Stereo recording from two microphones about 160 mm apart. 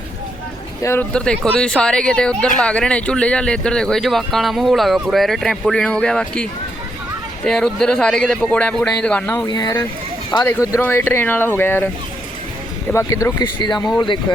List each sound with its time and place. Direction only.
0.8 s speech: 15° left (ahead or behind)
1.1 s speech: 5° left (ahead or behind)
9.5 s speech: 25° left (ahead or behind)
12.9 s speech: 20° left (ahead or behind)
13.4 s speech: 30° left (ahead or behind)